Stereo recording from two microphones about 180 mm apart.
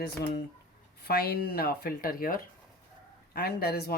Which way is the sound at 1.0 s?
60° left (ahead or behind).